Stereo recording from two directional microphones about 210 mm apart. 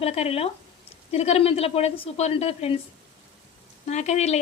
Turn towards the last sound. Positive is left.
turn(degrees=30)  # may be behind; listen again after turning